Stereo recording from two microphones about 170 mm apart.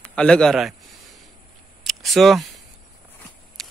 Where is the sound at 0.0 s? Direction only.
5° left (ahead or behind).